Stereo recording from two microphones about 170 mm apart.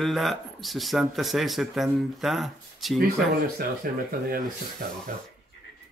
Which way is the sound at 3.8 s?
55° right (ahead or behind).